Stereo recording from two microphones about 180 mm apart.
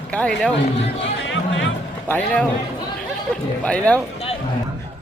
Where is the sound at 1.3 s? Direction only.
90° left.